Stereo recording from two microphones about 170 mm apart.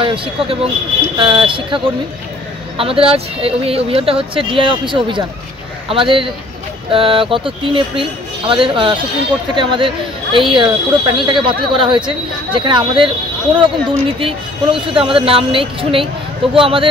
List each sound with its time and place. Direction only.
0.0 s speech: 30° right (ahead or behind)
2.8 s speech: 35° right (ahead or behind)